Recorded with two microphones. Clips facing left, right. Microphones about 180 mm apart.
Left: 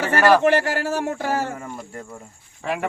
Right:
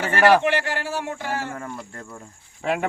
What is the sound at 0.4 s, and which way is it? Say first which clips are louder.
Speech: left 5 dB; 45° left (ahead or behind).